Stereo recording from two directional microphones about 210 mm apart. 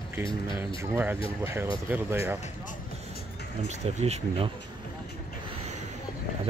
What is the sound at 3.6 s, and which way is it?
Speech, 30° right (ahead or behind).